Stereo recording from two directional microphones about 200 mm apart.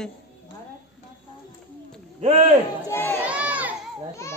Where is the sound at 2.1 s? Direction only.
35° right (ahead or behind).